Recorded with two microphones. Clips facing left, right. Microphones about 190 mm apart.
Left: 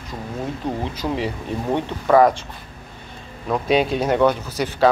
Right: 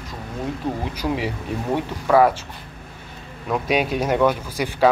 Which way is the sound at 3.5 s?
10° right (ahead or behind).